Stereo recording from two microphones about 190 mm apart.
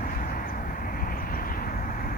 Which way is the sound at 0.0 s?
45° left (ahead or behind).